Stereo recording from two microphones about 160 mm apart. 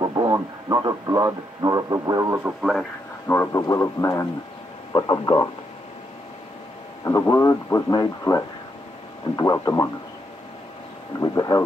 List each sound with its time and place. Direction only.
0.0 s speech: 25° right (ahead or behind)
2.6 s speech: centre (ahead or behind)
3.3 s speech: 15° left (ahead or behind)
7.1 s speech: 15° left (ahead or behind)
11.1 s speech: 20° left (ahead or behind)